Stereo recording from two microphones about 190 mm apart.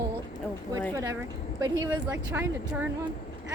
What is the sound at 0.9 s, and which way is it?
Speech, 15° right (ahead or behind).